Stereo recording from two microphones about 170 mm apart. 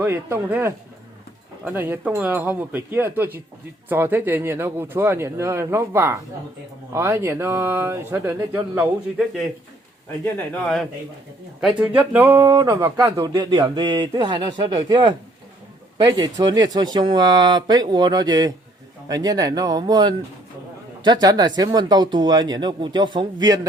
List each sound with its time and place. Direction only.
0.0 s speech: 15° right (ahead or behind)
10.2 s a man's voice: 5° left (ahead or behind)
11.6 s speech: 5° right (ahead or behind); by 23.6 s 25° right (ahead or behind)